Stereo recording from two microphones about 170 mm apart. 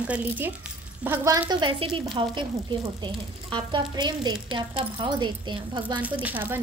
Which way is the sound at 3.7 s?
25° right (ahead or behind).